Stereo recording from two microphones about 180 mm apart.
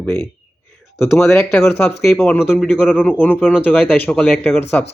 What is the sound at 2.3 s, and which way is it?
Speech, 10° left (ahead or behind).